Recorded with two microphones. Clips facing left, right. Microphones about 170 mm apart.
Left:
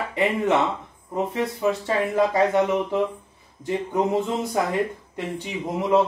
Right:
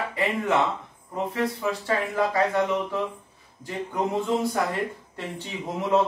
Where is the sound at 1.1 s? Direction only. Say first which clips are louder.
Left 2 dB; 25° left (ahead or behind).